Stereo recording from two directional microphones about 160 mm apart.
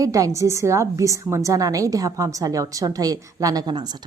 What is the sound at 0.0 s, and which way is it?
A woman's voice, 20° right (ahead or behind).